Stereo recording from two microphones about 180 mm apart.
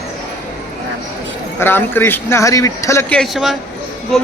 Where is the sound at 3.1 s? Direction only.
Centre (ahead or behind).